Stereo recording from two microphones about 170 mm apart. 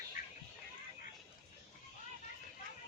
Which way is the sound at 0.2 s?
50° left (ahead or behind).